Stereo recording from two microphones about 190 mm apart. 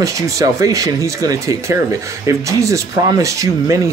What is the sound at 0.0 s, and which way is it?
Speech, 15° right (ahead or behind).